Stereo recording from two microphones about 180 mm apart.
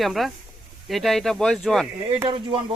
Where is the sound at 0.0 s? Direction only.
Centre (ahead or behind).